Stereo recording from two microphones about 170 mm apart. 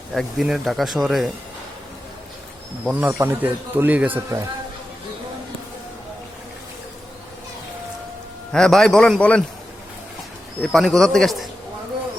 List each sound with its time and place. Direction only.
0.1 s speech: centre (ahead or behind)
2.8 s a man's voice: 10° right (ahead or behind)
8.5 s speech: 5° left (ahead or behind)
10.6 s speech: centre (ahead or behind)